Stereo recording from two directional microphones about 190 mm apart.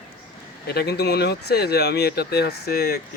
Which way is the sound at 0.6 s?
55° left (ahead or behind).